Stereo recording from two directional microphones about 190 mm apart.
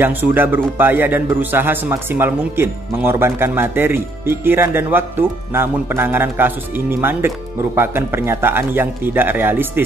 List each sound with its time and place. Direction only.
0.0 s a man's voice: 10° right (ahead or behind)